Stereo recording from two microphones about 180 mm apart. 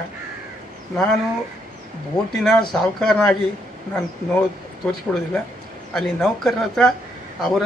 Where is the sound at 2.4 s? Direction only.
5° left (ahead or behind).